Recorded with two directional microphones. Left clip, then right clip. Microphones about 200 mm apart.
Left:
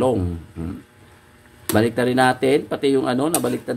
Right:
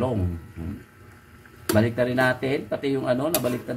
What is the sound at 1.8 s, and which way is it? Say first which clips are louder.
Speech: left 5 dB; 60° left (ahead or behind).